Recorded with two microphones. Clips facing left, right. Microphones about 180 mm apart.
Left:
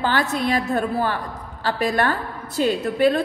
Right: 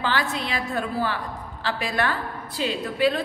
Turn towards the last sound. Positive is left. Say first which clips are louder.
# left 4 dB
turn(degrees=50)  # may be behind; listen again after turning